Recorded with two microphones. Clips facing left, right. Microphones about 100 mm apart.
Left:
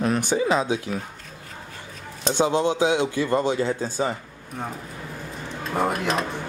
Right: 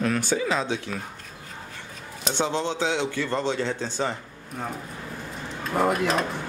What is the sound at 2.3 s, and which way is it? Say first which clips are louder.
A man's voice: left 5 dB; 15° left (ahead or behind).